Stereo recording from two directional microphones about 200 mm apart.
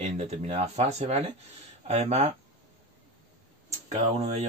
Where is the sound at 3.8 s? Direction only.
35° right (ahead or behind).